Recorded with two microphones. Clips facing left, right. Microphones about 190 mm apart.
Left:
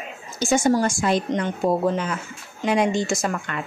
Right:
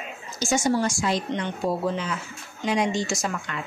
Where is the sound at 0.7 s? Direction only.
50° left (ahead or behind).